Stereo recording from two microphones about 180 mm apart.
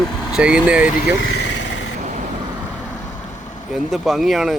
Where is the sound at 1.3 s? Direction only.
75° left (ahead or behind).